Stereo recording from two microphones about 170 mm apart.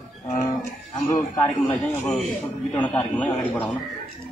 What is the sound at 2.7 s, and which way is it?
Speech, 10° left (ahead or behind).